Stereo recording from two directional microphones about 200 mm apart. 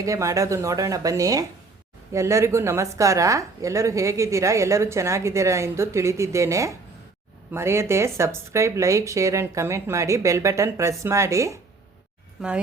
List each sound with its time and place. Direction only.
0.0 s a woman's voice: 15° right (ahead or behind)